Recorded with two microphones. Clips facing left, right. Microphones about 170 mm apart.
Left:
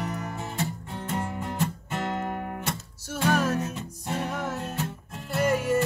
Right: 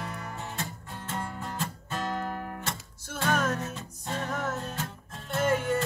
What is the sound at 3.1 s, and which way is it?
Music, 10° left (ahead or behind).